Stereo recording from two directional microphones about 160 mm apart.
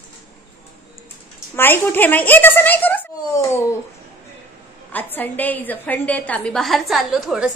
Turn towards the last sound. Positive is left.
turn(degrees=0)  # may be behind; listen again after turning